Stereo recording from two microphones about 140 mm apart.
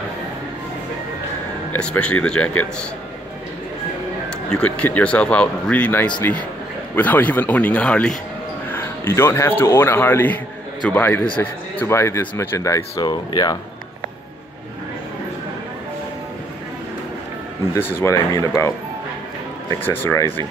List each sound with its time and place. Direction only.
1.7 s speech: 10° left (ahead or behind)
4.5 s speech: 10° left (ahead or behind); by 13.6 s 30° left (ahead or behind)
18.0 s speech: 20° left (ahead or behind)
19.8 s speech: 15° left (ahead or behind)